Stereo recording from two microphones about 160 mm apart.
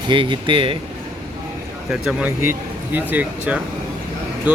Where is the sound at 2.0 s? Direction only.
10° right (ahead or behind).